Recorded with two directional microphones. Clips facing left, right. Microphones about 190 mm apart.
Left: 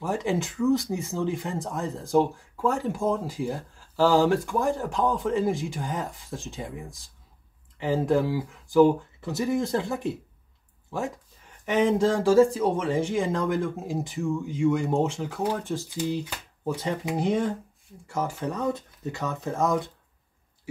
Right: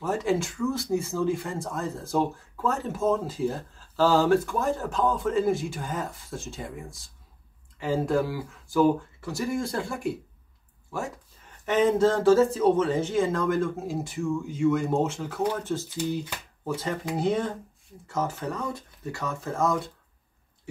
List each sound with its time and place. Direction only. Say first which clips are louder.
0.0 s speech: right 1 dB; 15° left (ahead or behind)
11.6 s speech: right 1 dB; 15° left (ahead or behind)